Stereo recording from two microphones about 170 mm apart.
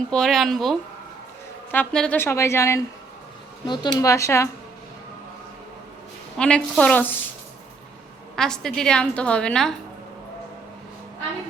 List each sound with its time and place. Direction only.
0.1 s a woman's voice: centre (ahead or behind); by 4.4 s 15° left (ahead or behind)
6.3 s a woman's voice: 5° left (ahead or behind)
8.4 s a woman's voice: 5° left (ahead or behind)